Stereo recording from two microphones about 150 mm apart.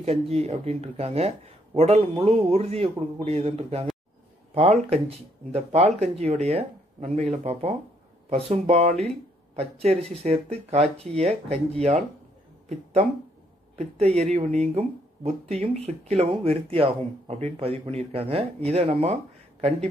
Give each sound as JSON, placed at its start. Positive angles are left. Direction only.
{"t": 0.0, "sound": "a man's voice", "side_deg": -45}